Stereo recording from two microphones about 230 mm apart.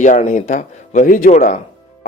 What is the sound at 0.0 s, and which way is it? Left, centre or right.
A man's voice, left.